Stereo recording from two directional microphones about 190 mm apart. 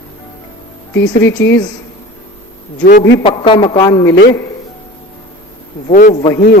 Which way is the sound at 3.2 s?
25° left (ahead or behind).